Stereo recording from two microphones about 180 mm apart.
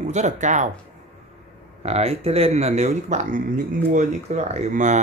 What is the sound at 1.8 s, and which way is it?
Speech, 35° right (ahead or behind).